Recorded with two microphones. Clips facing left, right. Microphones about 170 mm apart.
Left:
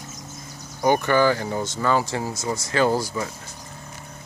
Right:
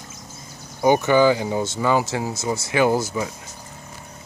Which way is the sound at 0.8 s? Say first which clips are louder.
Right 3 dB; 10° right (ahead or behind).